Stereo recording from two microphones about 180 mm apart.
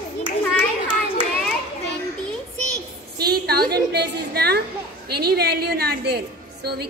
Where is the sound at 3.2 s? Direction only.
60° right (ahead or behind).